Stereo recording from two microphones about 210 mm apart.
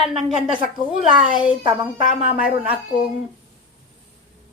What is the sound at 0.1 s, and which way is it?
Speech, 5° right (ahead or behind).